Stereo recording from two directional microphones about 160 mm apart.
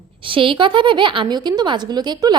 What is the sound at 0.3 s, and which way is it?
A woman's voice, 30° right (ahead or behind).